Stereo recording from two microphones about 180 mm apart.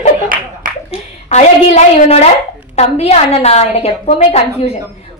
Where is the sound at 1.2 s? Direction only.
40° left (ahead or behind).